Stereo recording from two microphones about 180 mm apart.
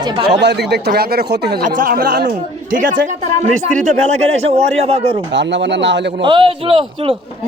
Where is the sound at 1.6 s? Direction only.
45° right (ahead or behind).